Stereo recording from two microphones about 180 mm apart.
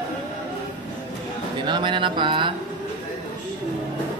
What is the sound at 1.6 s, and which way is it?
Speech, 25° right (ahead or behind).